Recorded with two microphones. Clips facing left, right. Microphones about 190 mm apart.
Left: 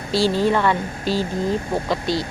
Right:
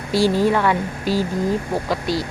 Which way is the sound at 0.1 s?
15° right (ahead or behind).